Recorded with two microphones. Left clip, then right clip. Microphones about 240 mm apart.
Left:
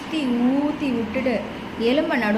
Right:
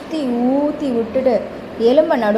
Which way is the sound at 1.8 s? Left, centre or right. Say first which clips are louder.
Right 8 dB; centre.